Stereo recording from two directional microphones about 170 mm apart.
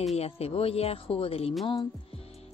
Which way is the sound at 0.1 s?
35° left (ahead or behind).